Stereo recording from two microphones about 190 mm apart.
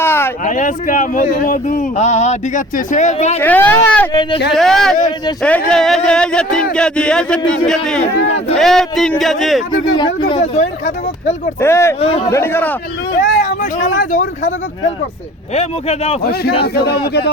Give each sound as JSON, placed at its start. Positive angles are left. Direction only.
{"t": 0.0, "sound": "a sound", "side_deg": 10}
{"t": 0.4, "sound": "speech", "side_deg": 45}
{"t": 3.4, "sound": "speech", "side_deg": 10}
{"t": 4.1, "sound": "speech", "side_deg": 25}
{"t": 4.5, "sound": "speech", "side_deg": 0}
{"t": 10.0, "sound": "speech", "side_deg": 25}
{"t": 11.6, "sound": "speech", "side_deg": 15}
{"t": 11.9, "sound": "speech", "side_deg": 30}
{"t": 12.3, "sound": "speech", "side_deg": 10}
{"t": 13.4, "sound": "speech", "side_deg": 45}
{"t": 15.5, "sound": "speech", "side_deg": 35}
{"t": 16.2, "sound": "speech", "side_deg": 55}